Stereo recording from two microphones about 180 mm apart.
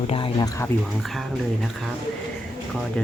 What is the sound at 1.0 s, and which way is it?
Speech, centre (ahead or behind).